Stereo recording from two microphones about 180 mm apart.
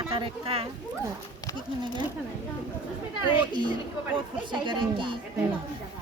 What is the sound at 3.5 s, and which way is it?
Speech, 25° right (ahead or behind).